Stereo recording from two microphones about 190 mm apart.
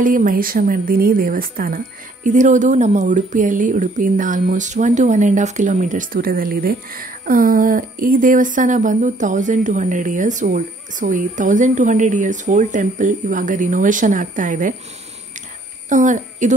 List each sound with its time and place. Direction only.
0.0 s speech: 45° right (ahead or behind)
15.9 s a woman's voice: 40° right (ahead or behind)